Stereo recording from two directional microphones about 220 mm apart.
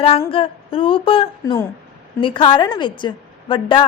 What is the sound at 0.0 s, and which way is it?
A woman's voice, 25° left (ahead or behind).